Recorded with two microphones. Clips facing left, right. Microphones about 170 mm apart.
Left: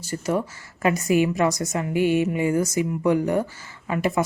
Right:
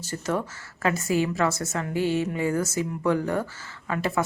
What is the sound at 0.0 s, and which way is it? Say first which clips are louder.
Speech: left 3 dB; 10° left (ahead or behind).